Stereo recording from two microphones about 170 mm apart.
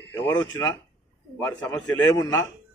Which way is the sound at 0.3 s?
25° left (ahead or behind).